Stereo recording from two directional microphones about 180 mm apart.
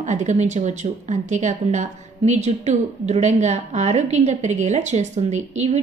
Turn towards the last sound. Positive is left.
turn(degrees=-40)  # may be behind; listen again after turning